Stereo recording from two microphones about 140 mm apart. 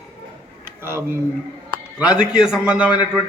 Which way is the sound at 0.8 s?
15° right (ahead or behind).